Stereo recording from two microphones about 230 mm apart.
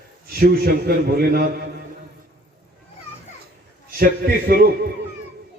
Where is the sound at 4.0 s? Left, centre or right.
Right.